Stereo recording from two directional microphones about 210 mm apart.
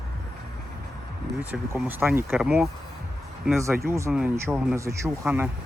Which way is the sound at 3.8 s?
10° right (ahead or behind).